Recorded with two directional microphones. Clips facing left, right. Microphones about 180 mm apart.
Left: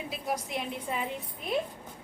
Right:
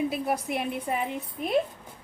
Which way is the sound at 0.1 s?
60° right (ahead or behind).